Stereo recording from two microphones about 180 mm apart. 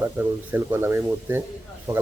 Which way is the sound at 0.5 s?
15° right (ahead or behind).